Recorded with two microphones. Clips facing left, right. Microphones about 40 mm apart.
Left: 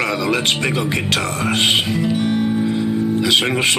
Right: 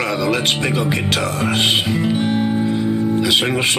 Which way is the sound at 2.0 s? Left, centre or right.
Centre.